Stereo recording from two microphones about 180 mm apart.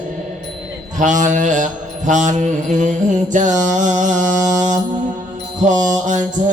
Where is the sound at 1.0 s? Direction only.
45° right (ahead or behind).